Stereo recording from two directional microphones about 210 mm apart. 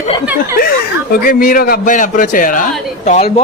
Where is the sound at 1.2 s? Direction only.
40° left (ahead or behind).